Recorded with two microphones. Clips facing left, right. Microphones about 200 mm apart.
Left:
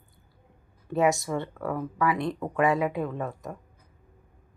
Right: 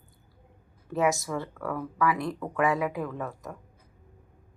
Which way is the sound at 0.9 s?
Centre (ahead or behind).